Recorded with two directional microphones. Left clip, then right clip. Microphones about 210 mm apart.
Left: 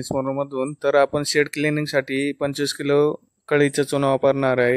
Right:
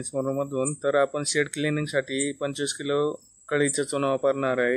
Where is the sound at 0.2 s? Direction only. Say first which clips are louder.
Left 1 dB; 35° left (ahead or behind).